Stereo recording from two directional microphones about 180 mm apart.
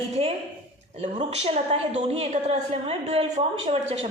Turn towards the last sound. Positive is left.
turn(degrees=-35)  # may be behind; listen again after turning